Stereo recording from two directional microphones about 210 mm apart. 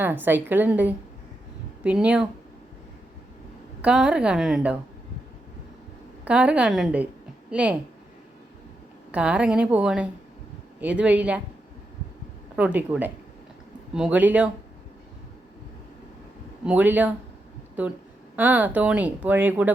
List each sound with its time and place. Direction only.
0.0 s a woman's voice: 10° right (ahead or behind)
3.8 s a woman's voice: 5° right (ahead or behind)
6.2 s a woman's voice: 5° right (ahead or behind)
9.1 s a woman's voice: 5° right (ahead or behind)
12.5 s speech: 5° right (ahead or behind)
16.6 s speech: 10° right (ahead or behind)